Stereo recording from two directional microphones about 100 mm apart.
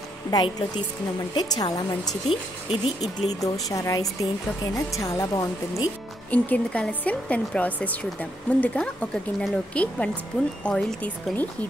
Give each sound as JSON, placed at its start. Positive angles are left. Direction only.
{"t": 0.3, "sound": "speech", "side_deg": 40}
{"t": 2.2, "sound": "speech", "side_deg": 90}
{"t": 3.3, "sound": "speech", "side_deg": 35}
{"t": 6.3, "sound": "a woman's voice", "side_deg": 15}